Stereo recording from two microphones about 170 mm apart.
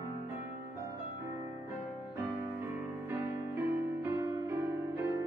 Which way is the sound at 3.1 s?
15° right (ahead or behind).